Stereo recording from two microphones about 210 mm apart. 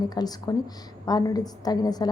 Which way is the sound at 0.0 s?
20° left (ahead or behind).